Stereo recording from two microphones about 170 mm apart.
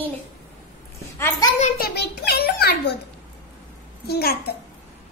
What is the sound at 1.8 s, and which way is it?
A woman's voice, 70° left (ahead or behind).